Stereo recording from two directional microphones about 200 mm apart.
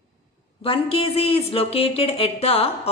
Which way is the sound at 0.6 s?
25° left (ahead or behind).